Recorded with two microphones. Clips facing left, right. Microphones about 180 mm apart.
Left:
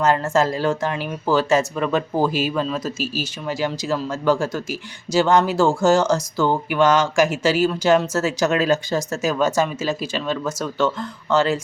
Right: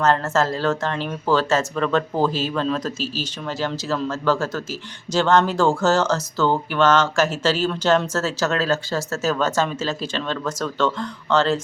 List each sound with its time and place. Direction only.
0.0 s speech: 10° left (ahead or behind)